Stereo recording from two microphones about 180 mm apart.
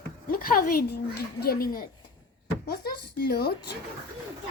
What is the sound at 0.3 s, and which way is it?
A child's voice, 55° left (ahead or behind).